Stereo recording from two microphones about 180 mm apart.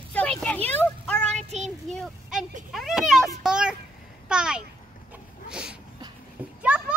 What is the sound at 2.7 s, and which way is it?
A child's voice, centre (ahead or behind).